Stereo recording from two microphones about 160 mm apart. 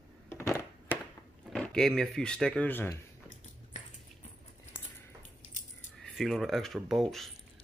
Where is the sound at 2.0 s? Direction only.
5° left (ahead or behind).